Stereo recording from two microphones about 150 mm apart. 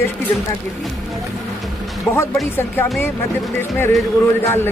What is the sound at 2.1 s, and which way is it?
Speech, 15° left (ahead or behind).